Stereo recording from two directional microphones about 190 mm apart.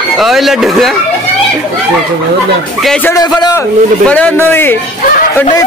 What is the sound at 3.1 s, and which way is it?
Speech, 20° left (ahead or behind).